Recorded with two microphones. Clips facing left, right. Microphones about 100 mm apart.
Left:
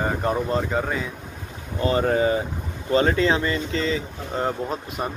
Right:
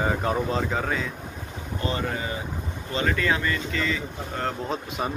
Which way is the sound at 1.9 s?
35° left (ahead or behind).